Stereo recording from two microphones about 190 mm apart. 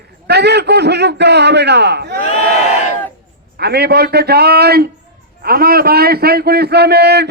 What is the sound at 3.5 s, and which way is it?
A man's voice, 60° right (ahead or behind).